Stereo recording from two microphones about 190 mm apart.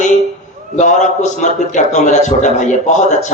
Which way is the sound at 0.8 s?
40° left (ahead or behind).